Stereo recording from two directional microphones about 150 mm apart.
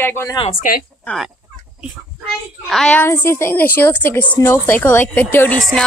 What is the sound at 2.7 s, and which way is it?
A woman's voice, 5° left (ahead or behind).